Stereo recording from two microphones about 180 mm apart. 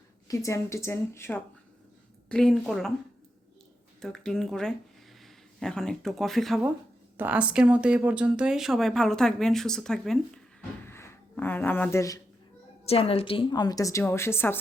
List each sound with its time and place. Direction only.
0.3 s speech: 15° left (ahead or behind)
4.0 s speech: 5° left (ahead or behind)
10.8 s a sound: 15° left (ahead or behind)
12.8 s a woman's voice: 35° left (ahead or behind); by 14.6 s 10° left (ahead or behind)